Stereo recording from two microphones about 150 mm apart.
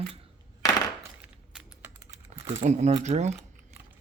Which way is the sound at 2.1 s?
50° right (ahead or behind).